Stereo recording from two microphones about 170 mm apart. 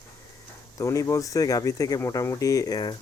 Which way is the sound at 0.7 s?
20° left (ahead or behind).